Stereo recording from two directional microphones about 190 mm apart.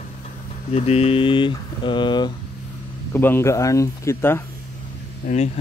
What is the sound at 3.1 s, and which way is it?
Speech, 10° left (ahead or behind).